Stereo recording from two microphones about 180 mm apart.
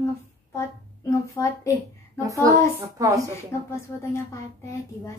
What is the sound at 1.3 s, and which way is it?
Speech, 15° left (ahead or behind).